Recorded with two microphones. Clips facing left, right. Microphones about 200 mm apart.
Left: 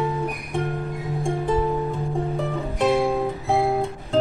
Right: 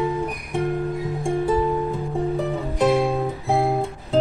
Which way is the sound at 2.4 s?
Centre (ahead or behind).